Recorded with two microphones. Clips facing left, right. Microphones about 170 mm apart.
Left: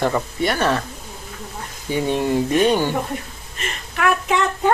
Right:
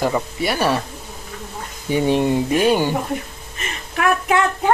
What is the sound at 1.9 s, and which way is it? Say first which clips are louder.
Speech: right 3 dB; 20° right (ahead or behind).